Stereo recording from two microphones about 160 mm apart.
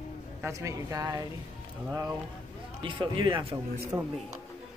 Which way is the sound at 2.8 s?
30° right (ahead or behind).